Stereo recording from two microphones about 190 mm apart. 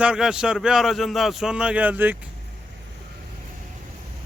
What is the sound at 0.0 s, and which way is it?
Speech, 5° right (ahead or behind).